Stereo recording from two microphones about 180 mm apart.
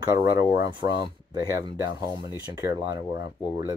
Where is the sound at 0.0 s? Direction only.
20° right (ahead or behind).